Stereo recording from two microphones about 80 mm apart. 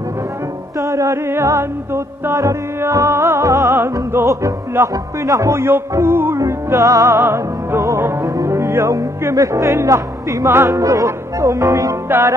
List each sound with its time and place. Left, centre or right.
0.7 s music: right
6.4 s music: right
7.2 s music: right
12.1 s music: right